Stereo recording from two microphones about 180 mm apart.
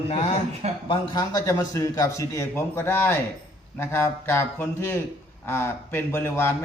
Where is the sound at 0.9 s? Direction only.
20° left (ahead or behind).